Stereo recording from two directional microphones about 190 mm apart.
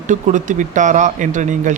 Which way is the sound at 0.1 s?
40° right (ahead or behind).